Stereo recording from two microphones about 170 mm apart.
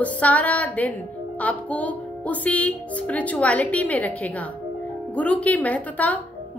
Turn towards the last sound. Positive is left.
turn(degrees=10)  # may be behind; listen again after turning